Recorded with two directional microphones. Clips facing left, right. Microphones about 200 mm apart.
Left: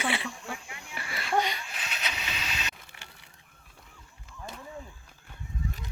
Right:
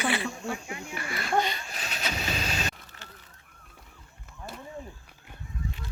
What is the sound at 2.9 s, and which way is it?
Fowl, 15° left (ahead or behind).